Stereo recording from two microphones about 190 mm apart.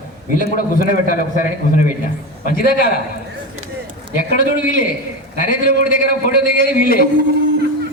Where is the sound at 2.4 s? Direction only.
50° left (ahead or behind).